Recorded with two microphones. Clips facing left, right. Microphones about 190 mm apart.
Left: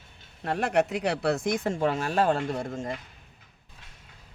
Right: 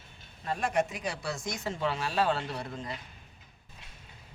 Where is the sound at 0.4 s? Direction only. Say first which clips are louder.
Left 5 dB; 70° left (ahead or behind); by 3.0 s 45° left (ahead or behind).